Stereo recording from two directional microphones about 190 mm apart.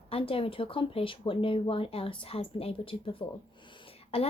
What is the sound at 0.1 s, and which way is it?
Speech, 30° left (ahead or behind).